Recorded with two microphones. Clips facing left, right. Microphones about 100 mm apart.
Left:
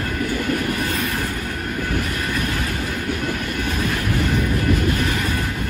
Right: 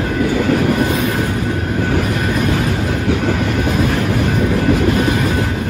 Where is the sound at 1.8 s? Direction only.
55° right (ahead or behind).